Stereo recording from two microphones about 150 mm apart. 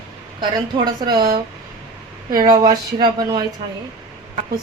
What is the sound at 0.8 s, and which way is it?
Speech, 25° right (ahead or behind).